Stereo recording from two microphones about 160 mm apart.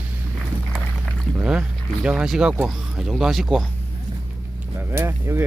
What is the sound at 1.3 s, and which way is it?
Speech, 5° right (ahead or behind).